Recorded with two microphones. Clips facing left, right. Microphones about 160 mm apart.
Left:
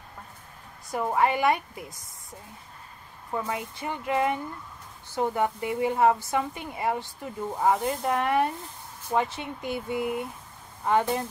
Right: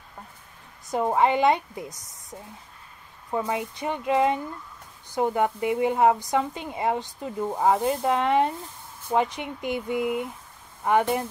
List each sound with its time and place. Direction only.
0.8 s a woman's voice: 20° right (ahead or behind)
3.3 s a woman's voice: 20° right (ahead or behind)